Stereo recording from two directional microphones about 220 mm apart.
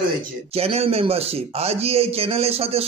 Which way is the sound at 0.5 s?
25° right (ahead or behind).